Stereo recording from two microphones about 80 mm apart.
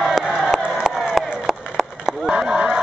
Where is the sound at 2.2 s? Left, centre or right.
Centre.